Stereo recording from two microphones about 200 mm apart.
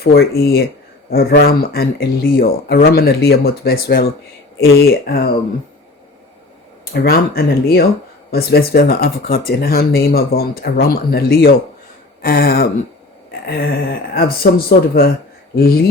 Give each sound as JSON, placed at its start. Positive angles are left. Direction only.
{"t": 0.0, "sound": "speech", "side_deg": 50}
{"t": 6.9, "sound": "speech", "side_deg": 50}
{"t": 14.1, "sound": "speech", "side_deg": 50}